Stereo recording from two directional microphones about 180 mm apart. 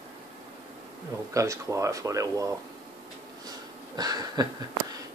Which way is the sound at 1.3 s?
15° right (ahead or behind).